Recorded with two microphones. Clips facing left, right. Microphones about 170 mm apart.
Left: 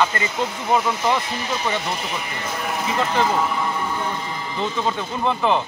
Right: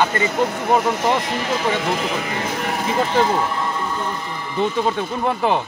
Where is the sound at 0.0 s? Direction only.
50° right (ahead or behind); by 2.8 s 70° right (ahead or behind).